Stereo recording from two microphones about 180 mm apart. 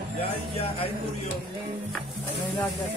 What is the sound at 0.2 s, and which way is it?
Speech, 35° left (ahead or behind).